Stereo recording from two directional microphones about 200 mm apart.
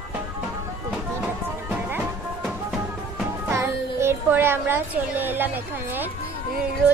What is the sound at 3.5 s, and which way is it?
Child singing, 15° right (ahead or behind).